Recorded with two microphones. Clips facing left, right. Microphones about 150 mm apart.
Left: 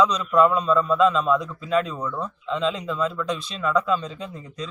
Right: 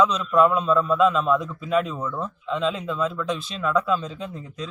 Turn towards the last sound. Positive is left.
turn(degrees=0)  # may be behind; listen again after turning